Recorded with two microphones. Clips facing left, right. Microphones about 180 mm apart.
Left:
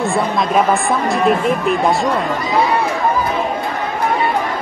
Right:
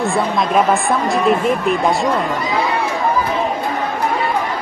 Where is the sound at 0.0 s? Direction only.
Centre (ahead or behind).